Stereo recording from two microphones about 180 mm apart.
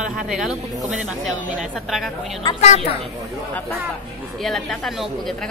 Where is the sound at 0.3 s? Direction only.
Centre (ahead or behind).